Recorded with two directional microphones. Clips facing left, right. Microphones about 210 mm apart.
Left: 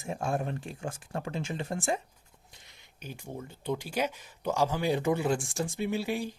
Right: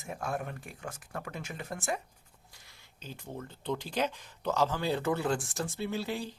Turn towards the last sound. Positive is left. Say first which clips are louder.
# left 3 dB
turn(degrees=10)  # may be behind; listen again after turning